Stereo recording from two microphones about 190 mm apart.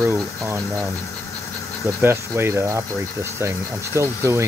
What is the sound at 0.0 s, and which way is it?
Speech, 10° right (ahead or behind).